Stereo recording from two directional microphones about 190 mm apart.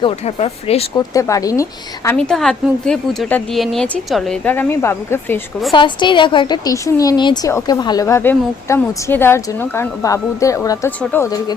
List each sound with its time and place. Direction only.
0.0 s speech: 35° left (ahead or behind)
0.9 s a woman's voice: 15° left (ahead or behind)
2.0 s a woman's voice: 5° left (ahead or behind)
5.7 s a woman's voice: 25° left (ahead or behind)